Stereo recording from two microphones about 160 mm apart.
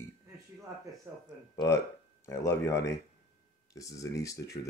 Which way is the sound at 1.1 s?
15° right (ahead or behind).